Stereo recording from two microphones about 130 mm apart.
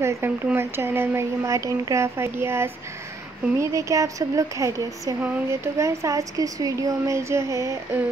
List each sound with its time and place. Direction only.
0.0 s speech: 20° right (ahead or behind)